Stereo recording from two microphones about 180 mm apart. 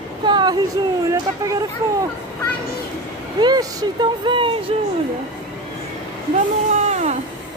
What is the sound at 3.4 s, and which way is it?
Speech, 20° right (ahead or behind).